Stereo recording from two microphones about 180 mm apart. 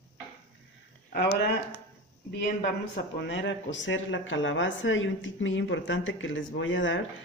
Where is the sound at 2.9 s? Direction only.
80° left.